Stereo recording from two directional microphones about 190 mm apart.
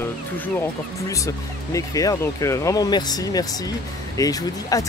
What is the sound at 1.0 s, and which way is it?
Speech, 15° left (ahead or behind).